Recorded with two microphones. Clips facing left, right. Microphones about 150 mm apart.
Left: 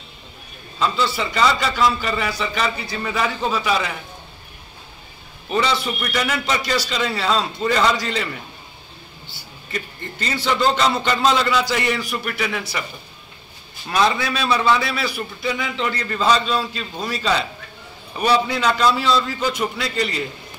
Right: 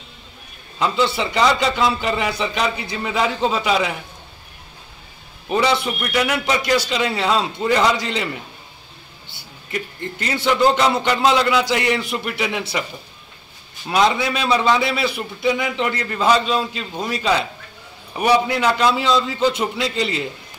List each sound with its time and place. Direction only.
0.7 s a man's voice: 15° right (ahead or behind)
5.9 s a man's voice: 10° right (ahead or behind)
9.7 s a man's voice: 15° right (ahead or behind)
13.8 s a man's voice: 15° right (ahead or behind)